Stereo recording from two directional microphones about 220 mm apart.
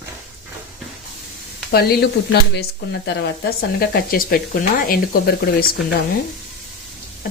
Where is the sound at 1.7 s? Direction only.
45° left (ahead or behind).